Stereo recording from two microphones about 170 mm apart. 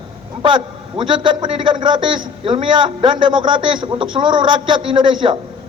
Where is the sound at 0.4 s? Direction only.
30° right (ahead or behind).